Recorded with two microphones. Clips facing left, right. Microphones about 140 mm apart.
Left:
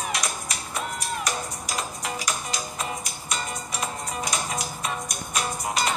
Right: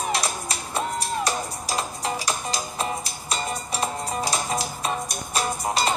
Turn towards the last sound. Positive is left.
turn(degrees=-30)  # may be behind; listen again after turning